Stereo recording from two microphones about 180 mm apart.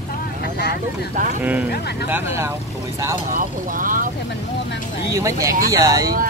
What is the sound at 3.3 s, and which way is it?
Speech, 50° right (ahead or behind).